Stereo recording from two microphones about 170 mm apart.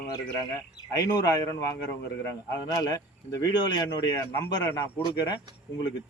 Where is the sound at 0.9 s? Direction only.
20° left (ahead or behind).